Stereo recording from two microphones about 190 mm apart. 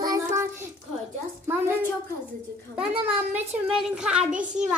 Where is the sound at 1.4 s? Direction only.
10° right (ahead or behind).